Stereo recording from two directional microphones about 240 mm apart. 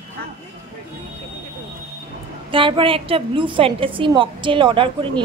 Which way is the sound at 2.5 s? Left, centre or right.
Right.